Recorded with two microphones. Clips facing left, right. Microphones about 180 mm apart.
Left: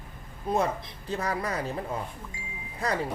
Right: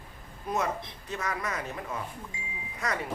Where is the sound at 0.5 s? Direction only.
30° left (ahead or behind).